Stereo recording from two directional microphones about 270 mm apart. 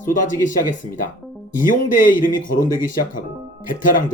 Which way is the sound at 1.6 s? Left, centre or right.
Left.